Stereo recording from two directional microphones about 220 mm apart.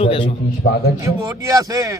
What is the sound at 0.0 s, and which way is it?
Speech, 25° left (ahead or behind).